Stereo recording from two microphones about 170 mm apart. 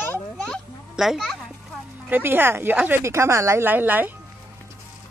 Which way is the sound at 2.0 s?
10° right (ahead or behind).